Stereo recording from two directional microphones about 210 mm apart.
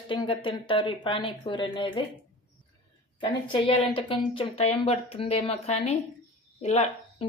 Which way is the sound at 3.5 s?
25° left (ahead or behind).